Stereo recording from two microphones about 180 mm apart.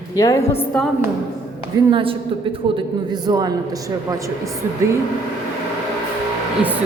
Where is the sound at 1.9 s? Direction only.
30° right (ahead or behind).